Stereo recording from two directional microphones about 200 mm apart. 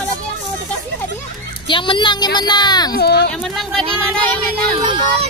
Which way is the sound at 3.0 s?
55° left (ahead or behind).